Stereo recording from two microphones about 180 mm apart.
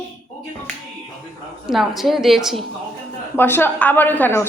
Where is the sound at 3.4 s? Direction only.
10° left (ahead or behind).